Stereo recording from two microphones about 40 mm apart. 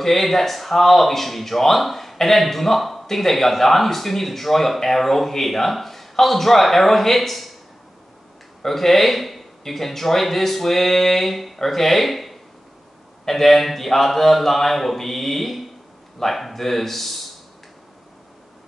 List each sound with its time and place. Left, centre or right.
0.0 s speech: centre
8.6 s speech: centre